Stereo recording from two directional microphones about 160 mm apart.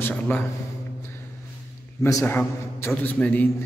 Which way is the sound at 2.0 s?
15° left (ahead or behind).